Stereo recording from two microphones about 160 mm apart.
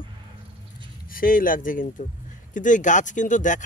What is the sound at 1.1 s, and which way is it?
Speech, 60° left (ahead or behind).